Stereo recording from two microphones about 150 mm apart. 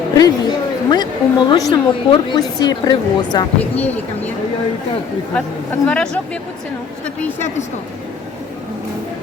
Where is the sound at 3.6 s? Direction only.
10° left (ahead or behind).